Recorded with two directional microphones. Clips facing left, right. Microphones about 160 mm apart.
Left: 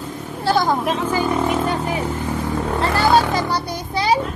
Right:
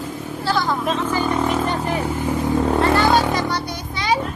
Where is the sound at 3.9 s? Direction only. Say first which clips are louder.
Left 3 dB; 35° left (ahead or behind).